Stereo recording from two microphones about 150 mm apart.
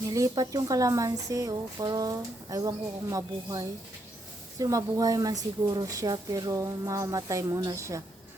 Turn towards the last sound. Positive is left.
turn(degrees=-20)  # may be behind; listen again after turning